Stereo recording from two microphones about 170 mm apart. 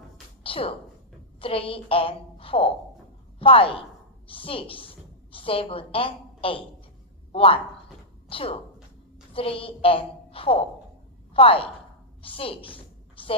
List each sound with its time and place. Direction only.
0.4 s music: 35° left (ahead or behind)
1.4 s a woman's voice: 35° left (ahead or behind)
12.2 s a sound: 30° left (ahead or behind)